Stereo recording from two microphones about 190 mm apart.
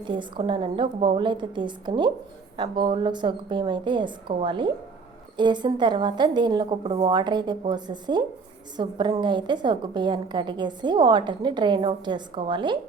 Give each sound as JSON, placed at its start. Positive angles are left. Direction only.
{"t": 0.0, "sound": "a woman's voice", "side_deg": -25}